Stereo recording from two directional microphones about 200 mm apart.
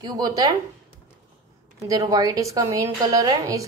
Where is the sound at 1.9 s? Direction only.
20° right (ahead or behind).